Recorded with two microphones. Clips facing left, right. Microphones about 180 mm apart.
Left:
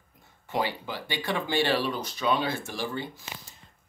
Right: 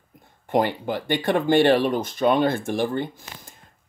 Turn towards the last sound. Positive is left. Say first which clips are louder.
# right 1 dB
turn(degrees=-55)  # may be behind; listen again after turning